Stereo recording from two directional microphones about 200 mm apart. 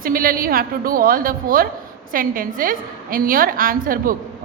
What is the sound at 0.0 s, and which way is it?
A woman's voice, 45° right (ahead or behind).